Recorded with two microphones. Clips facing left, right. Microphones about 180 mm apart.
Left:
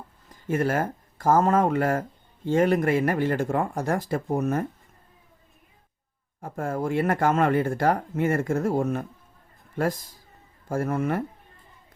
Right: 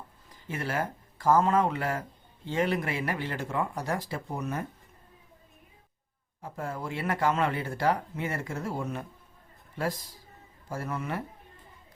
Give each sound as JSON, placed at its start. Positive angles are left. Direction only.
{"t": 0.4, "sound": "speech", "side_deg": 50}
{"t": 6.4, "sound": "speech", "side_deg": 50}
{"t": 10.7, "sound": "speech", "side_deg": 50}